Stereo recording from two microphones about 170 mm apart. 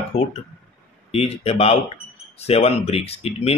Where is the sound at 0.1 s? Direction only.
40° left (ahead or behind).